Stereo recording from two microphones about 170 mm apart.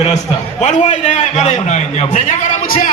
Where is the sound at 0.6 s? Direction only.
45° left (ahead or behind).